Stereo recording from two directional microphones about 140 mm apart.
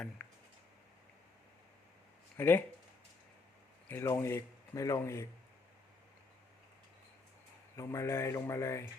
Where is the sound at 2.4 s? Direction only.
15° left (ahead or behind).